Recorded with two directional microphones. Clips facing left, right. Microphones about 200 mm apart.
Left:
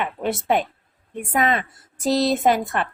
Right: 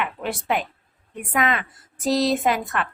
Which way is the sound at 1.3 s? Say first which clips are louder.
Left 2 dB; 35° left (ahead or behind).